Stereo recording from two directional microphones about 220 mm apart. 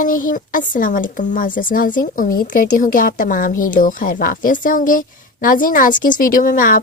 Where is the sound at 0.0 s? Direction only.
40° left (ahead or behind).